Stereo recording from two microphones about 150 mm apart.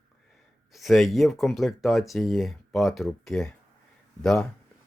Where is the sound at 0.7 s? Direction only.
Centre (ahead or behind).